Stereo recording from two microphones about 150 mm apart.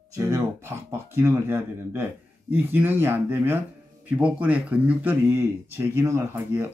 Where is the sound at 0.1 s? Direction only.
20° right (ahead or behind).